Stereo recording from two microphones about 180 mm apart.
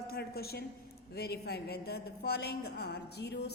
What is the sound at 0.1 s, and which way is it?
A woman's voice, 60° left (ahead or behind).